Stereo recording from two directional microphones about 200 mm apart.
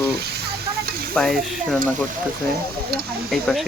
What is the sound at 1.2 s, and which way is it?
Speech, centre (ahead or behind).